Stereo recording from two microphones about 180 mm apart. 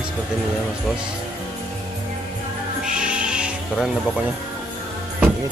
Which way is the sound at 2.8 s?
5° right (ahead or behind).